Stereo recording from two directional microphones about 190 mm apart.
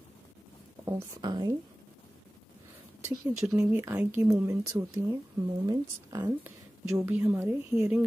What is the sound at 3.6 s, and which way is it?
Speech, 10° right (ahead or behind).